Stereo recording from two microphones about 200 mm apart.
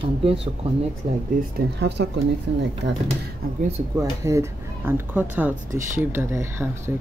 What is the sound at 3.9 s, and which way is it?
Speech, 15° right (ahead or behind).